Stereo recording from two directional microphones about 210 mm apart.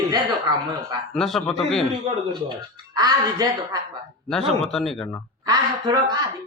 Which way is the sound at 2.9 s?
20° right (ahead or behind).